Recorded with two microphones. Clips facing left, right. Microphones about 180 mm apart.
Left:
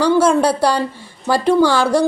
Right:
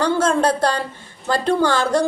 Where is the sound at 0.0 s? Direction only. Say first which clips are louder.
Left 5 dB; 10° left (ahead or behind).